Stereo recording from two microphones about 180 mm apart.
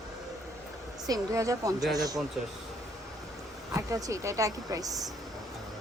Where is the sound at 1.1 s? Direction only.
20° right (ahead or behind).